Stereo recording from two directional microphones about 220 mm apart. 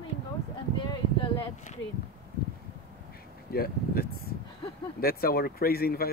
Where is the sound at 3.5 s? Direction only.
45° left (ahead or behind).